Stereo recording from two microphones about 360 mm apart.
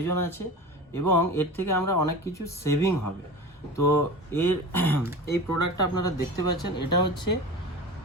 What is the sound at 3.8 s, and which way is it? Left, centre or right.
Speech, left.